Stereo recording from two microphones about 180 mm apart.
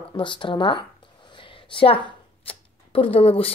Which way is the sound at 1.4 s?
30° left (ahead or behind).